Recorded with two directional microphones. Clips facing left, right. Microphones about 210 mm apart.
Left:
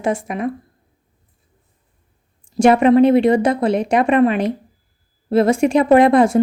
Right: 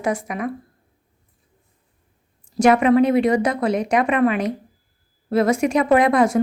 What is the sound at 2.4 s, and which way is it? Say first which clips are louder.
A woman's voice: left 3 dB; 30° left (ahead or behind).